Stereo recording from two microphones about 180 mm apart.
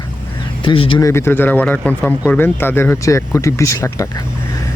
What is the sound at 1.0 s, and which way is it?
Speech, 15° left (ahead or behind).